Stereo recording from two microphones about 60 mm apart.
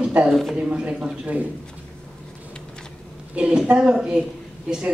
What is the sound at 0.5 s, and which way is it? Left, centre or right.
Speech, centre.